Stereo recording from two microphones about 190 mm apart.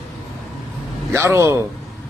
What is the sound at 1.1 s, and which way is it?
Speech, 15° right (ahead or behind).